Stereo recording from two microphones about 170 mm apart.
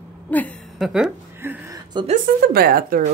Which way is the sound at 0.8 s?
Centre (ahead or behind).